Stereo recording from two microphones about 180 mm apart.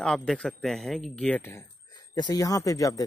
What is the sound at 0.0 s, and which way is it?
Speech, 5° left (ahead or behind).